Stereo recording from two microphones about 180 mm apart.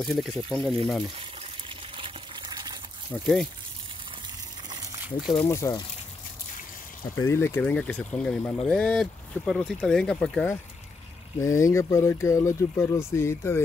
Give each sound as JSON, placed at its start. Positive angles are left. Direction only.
{"t": 0.0, "sound": "speech", "side_deg": 0}
{"t": 2.0, "sound": "water", "side_deg": -25}
{"t": 3.1, "sound": "speech", "side_deg": 0}
{"t": 5.4, "sound": "speech", "side_deg": 15}
{"t": 7.2, "sound": "speech", "side_deg": 15}
{"t": 11.4, "sound": "speech", "side_deg": 15}